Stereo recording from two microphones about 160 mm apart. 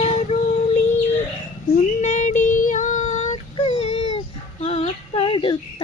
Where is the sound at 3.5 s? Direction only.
40° left (ahead or behind).